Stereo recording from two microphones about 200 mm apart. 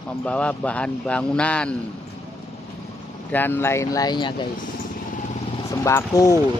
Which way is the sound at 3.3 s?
10° left (ahead or behind).